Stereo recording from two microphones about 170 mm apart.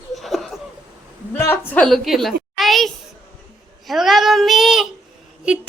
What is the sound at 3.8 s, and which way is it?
A child's voice, centre (ahead or behind).